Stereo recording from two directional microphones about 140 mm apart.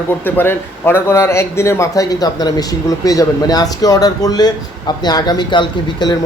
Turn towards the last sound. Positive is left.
turn(degrees=35)  # may be behind; listen again after turning